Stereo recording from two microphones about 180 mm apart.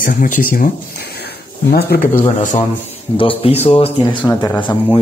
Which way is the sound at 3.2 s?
30° left (ahead or behind).